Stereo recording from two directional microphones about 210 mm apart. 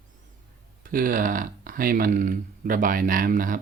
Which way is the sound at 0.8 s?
40° right (ahead or behind).